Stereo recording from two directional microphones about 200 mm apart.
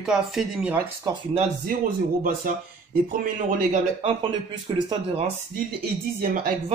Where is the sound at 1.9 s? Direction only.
45° right (ahead or behind).